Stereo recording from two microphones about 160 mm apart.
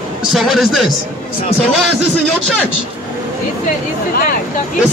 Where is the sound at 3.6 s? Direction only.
60° left (ahead or behind).